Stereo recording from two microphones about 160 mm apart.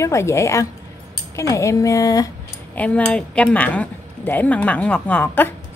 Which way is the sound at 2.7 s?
10° left (ahead or behind).